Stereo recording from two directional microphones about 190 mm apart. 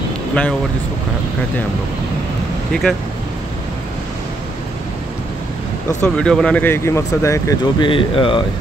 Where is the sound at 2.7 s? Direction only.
5° left (ahead or behind).